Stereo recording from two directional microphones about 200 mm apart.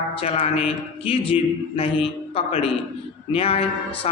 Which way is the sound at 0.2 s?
30° left (ahead or behind).